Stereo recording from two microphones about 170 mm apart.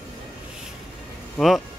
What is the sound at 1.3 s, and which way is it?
Speech, centre (ahead or behind).